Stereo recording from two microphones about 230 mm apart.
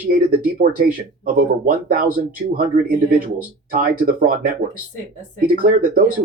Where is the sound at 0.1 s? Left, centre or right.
Right.